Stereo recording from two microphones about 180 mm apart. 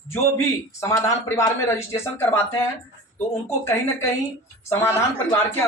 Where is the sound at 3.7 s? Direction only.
15° left (ahead or behind).